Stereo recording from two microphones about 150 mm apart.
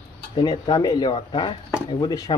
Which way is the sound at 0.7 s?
25° left (ahead or behind).